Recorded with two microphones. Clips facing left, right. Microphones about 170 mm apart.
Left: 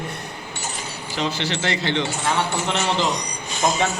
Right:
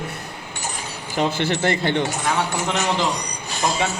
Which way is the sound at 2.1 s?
15° right (ahead or behind).